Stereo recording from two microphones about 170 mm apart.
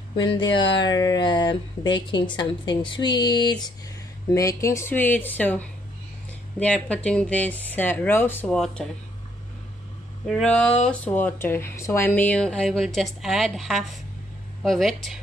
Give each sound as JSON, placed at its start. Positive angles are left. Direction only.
{"t": 0.2, "sound": "speech", "side_deg": 25}
{"t": 10.2, "sound": "speech", "side_deg": 5}